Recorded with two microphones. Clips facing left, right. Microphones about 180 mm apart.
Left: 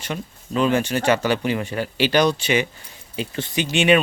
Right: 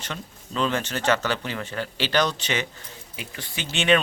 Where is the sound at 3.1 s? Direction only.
30° left (ahead or behind).